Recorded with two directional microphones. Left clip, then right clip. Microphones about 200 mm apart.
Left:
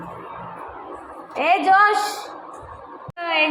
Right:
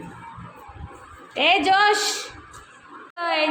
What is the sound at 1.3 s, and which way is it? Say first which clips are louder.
Speech: left 2 dB; 25° right (ahead or behind).